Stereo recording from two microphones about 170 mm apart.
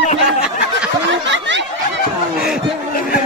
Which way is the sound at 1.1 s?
90° right.